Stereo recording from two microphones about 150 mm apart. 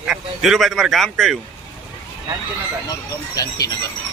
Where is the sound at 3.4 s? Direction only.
25° left (ahead or behind).